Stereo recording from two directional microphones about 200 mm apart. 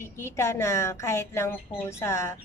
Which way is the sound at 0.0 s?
15° left (ahead or behind).